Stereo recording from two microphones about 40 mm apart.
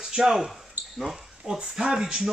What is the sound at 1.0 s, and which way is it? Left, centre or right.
Speech, centre.